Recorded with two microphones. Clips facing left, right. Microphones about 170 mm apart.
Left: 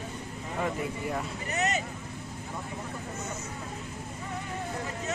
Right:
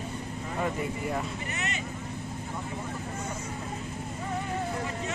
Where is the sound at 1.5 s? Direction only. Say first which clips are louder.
Left 10 dB; 40° left (ahead or behind).